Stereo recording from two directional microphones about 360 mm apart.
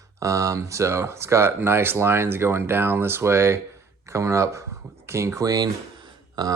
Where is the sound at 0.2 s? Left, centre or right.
Centre.